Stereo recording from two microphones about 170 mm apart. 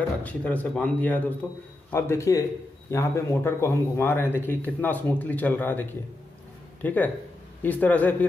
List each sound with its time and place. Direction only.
0.2 s speech: 10° left (ahead or behind)